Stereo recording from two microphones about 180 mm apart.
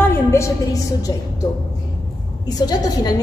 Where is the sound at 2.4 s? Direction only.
20° left (ahead or behind).